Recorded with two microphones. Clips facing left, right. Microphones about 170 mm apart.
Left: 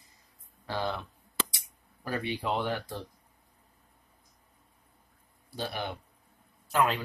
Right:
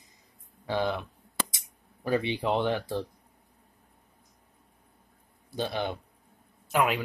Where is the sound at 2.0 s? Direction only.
25° right (ahead or behind).